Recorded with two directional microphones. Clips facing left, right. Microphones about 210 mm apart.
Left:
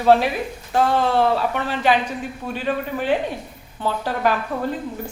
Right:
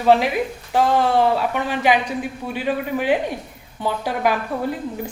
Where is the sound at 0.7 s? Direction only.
15° right (ahead or behind).